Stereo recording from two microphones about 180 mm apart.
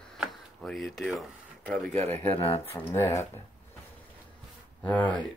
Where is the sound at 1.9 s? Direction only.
35° right (ahead or behind).